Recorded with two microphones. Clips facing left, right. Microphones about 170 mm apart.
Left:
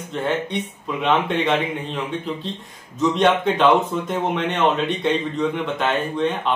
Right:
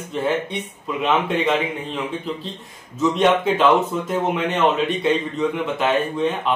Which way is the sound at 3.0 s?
5° right (ahead or behind).